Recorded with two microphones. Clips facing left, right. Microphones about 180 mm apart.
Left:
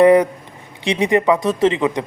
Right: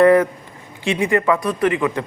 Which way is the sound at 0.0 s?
15° left (ahead or behind).